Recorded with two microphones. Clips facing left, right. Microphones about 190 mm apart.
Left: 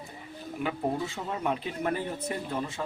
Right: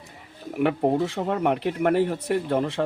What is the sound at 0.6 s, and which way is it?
Speech, 65° right (ahead or behind).